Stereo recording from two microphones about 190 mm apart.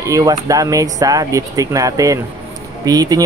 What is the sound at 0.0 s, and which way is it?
Speech, 20° right (ahead or behind).